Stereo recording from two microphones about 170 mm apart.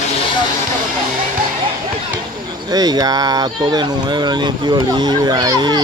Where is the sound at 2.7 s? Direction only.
25° right (ahead or behind).